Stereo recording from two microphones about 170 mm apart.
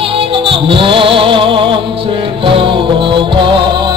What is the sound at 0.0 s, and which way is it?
Music, 30° right (ahead or behind).